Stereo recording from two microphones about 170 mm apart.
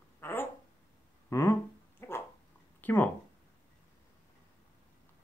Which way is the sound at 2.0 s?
15° left (ahead or behind).